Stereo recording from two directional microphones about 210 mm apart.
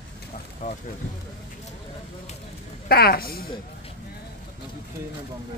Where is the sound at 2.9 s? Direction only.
45° left (ahead or behind).